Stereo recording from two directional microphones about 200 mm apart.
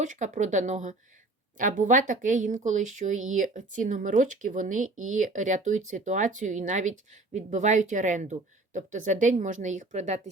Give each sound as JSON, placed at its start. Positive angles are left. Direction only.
{"t": 0.0, "sound": "speech", "side_deg": -40}